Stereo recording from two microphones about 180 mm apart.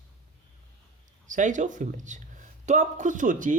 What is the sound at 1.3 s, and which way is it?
Speech, 45° right (ahead or behind).